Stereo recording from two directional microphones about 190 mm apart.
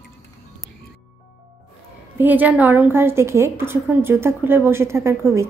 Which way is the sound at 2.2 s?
10° right (ahead or behind).